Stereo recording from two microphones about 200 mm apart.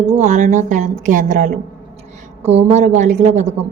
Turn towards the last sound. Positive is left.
turn(degrees=-35)  # may be behind; listen again after turning